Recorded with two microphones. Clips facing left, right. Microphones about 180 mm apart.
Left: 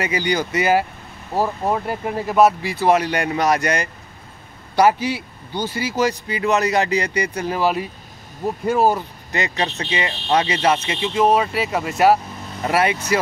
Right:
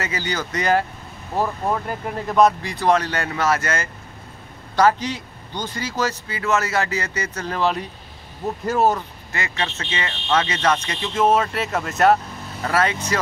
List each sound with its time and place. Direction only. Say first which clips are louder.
0.0 s speech: left 5 dB; 15° left (ahead or behind)
8.9 s speech: left 4 dB; 20° left (ahead or behind)